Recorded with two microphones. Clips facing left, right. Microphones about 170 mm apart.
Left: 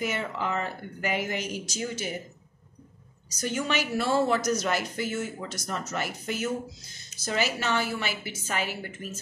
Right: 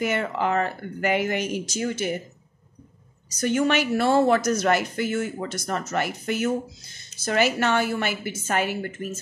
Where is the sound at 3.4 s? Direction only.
60° right (ahead or behind).